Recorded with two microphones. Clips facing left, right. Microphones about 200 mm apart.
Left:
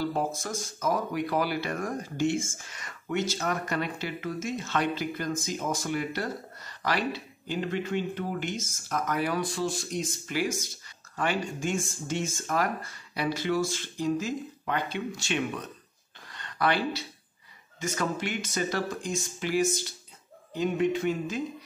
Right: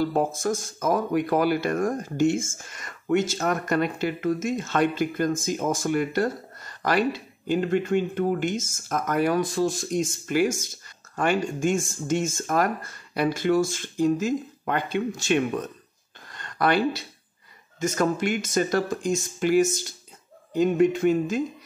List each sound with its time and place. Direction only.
0.1 s speech: 45° right (ahead or behind)
16.3 s a sound: 45° right (ahead or behind)
17.7 s speech: 45° right (ahead or behind)